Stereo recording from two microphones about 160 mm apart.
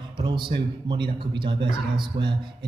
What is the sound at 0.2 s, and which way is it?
Speech, 30° right (ahead or behind).